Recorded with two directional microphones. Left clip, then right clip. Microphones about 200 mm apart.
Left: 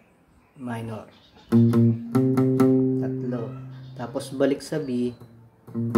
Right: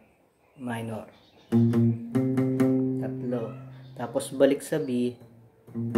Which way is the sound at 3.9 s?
5° left (ahead or behind).